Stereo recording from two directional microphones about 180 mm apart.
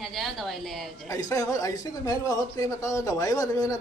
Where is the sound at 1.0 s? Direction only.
20° left (ahead or behind).